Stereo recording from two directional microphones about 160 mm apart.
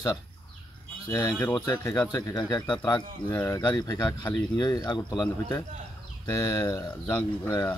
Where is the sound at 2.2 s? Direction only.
20° left (ahead or behind).